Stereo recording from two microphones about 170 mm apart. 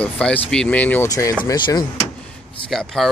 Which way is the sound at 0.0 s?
5° left (ahead or behind).